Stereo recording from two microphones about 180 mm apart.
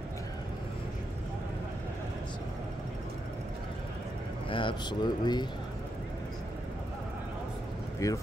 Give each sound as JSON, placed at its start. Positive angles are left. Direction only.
{"t": 4.5, "sound": "speech", "side_deg": 30}
{"t": 8.0, "sound": "speech", "side_deg": 15}